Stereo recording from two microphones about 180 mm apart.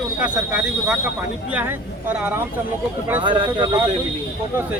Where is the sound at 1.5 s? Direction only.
10° right (ahead or behind).